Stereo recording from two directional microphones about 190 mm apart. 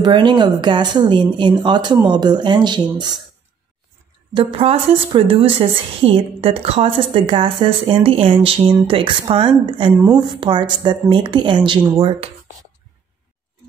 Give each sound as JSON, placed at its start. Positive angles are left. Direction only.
{"t": 0.0, "sound": "a woman's voice", "side_deg": -25}
{"t": 4.3, "sound": "a woman's voice", "side_deg": -25}